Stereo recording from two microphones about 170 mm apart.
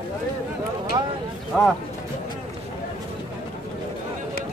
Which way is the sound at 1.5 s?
5° left (ahead or behind).